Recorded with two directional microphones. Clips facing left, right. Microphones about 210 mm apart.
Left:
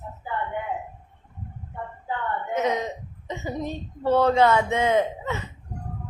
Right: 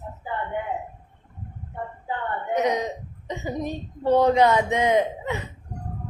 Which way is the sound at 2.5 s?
15° right (ahead or behind).